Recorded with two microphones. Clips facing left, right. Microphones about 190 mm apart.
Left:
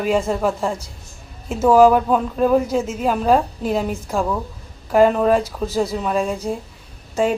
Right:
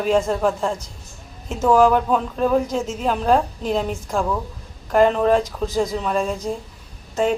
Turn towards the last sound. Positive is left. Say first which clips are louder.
# left 1 dB
turn(degrees=5)  # may be behind; listen again after turning